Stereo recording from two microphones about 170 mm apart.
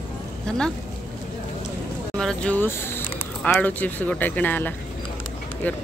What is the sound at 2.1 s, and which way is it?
Speech, 5° left (ahead or behind).